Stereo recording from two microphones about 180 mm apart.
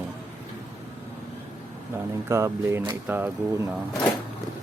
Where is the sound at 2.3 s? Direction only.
15° right (ahead or behind).